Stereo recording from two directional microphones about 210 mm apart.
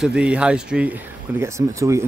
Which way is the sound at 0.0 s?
5° right (ahead or behind).